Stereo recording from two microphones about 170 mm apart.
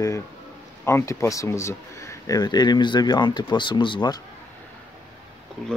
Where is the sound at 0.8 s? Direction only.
15° left (ahead or behind).